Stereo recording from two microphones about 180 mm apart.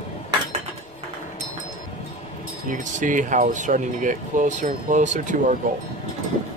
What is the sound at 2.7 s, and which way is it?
Speech, 45° right (ahead or behind).